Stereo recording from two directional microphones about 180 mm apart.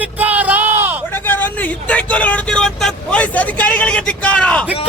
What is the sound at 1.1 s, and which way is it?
Vehicle, 10° left (ahead or behind).